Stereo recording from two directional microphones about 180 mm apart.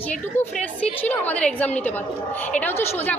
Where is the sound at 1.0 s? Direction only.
10° left (ahead or behind).